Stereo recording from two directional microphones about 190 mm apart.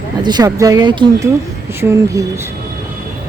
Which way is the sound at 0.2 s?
20° right (ahead or behind).